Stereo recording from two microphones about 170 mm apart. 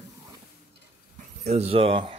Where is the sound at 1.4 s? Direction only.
40° right (ahead or behind).